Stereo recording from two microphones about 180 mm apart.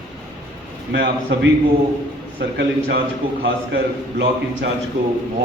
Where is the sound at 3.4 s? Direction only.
80° right.